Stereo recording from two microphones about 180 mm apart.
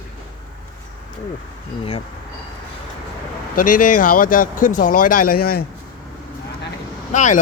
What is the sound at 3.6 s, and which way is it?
Speech, 50° left (ahead or behind).